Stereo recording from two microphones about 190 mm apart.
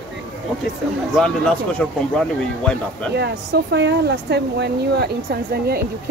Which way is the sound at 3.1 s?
60° right (ahead or behind).